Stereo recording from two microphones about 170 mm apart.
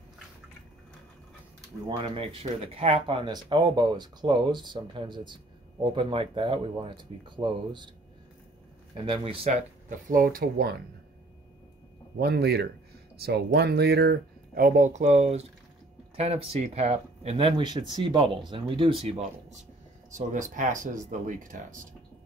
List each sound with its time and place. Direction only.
1.9 s speech: 30° right (ahead or behind)
8.9 s speech: 30° right (ahead or behind)
9.8 s speech: 50° right (ahead or behind)
12.2 s speech: 70° right (ahead or behind); by 19.6 s 35° right (ahead or behind)
20.1 s speech: 50° right (ahead or behind)